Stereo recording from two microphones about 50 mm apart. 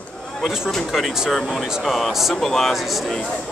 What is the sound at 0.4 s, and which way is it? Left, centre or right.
Speech, centre.